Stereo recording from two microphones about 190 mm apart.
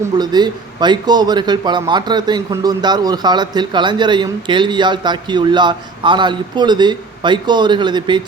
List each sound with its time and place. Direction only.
0.2 s a man's voice: 20° right (ahead or behind)